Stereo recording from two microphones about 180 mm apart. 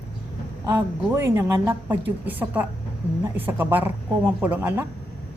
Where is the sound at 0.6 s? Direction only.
15° right (ahead or behind).